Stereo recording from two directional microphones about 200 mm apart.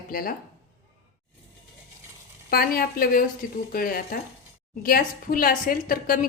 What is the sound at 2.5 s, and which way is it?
A woman's voice, 50° left (ahead or behind).